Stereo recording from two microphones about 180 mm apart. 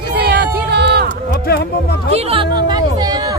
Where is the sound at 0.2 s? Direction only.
65° right (ahead or behind).